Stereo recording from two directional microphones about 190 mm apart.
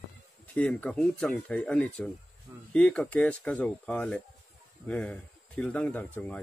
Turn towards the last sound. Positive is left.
turn(degrees=10)  # may be behind; listen again after turning